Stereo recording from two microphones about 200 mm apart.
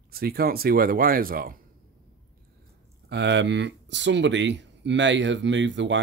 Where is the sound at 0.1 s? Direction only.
50° right (ahead or behind).